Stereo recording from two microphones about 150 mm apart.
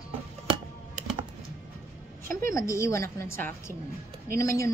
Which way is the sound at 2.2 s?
20° left (ahead or behind).